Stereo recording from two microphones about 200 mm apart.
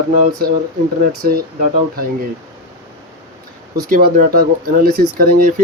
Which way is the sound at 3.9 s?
45° right (ahead or behind).